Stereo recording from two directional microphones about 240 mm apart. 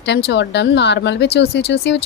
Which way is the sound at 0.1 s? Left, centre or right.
Left.